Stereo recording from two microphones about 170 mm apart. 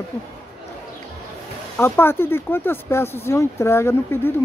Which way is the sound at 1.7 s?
10° left (ahead or behind).